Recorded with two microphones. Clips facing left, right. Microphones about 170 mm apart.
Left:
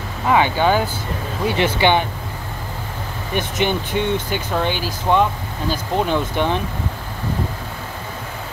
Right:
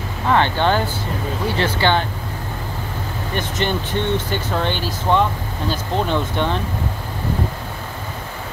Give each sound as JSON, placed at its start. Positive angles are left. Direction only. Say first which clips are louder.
{"t": 0.3, "sound": "speech", "louder": "left 1 dB", "side_deg": 10}
{"t": 3.3, "sound": "speech", "louder": "left 2 dB", "side_deg": 15}